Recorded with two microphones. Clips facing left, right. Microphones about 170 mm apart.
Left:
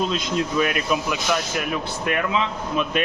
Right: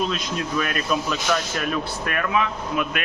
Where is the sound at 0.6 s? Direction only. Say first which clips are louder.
Left 2 dB; 15° left (ahead or behind).